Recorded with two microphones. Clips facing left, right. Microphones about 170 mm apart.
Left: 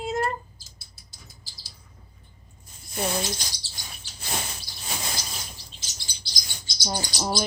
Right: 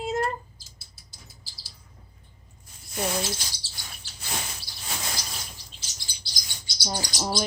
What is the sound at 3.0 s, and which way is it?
Speech, 5° right (ahead or behind).